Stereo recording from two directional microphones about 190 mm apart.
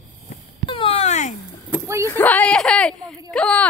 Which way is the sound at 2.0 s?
10° left (ahead or behind).